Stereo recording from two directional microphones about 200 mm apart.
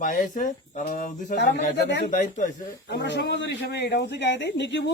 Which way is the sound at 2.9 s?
60° left (ahead or behind).